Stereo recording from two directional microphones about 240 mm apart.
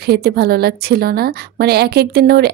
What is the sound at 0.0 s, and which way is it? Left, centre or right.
A woman's voice, right.